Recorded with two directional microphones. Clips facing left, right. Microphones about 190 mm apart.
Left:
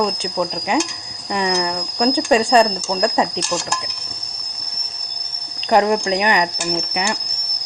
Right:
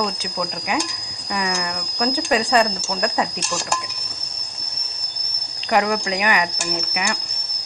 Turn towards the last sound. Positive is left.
turn(degrees=25)  # may be behind; listen again after turning